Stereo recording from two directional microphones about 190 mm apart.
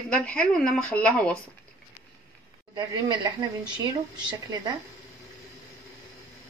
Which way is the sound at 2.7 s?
25° right (ahead or behind).